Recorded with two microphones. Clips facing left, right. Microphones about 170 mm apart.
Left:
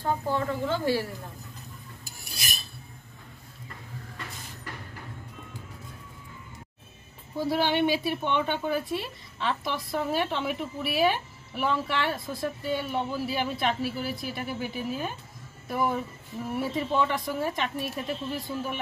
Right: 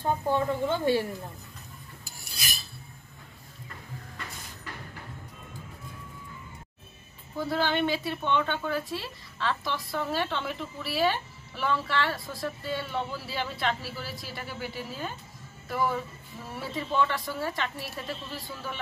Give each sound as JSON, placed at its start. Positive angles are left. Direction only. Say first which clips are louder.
{"t": 0.0, "sound": "speech", "louder": "right 1 dB", "side_deg": -20}
{"t": 7.4, "sound": "a woman's voice", "louder": "left 2 dB", "side_deg": 15}